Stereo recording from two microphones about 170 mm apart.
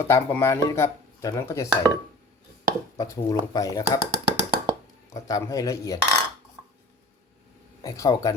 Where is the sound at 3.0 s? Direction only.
25° left (ahead or behind).